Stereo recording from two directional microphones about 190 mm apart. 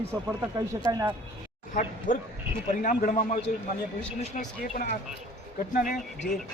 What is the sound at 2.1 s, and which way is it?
A man's voice, 45° left (ahead or behind).